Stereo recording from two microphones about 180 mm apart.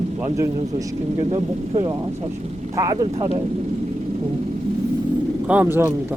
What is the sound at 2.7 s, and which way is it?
Speech, 20° right (ahead or behind).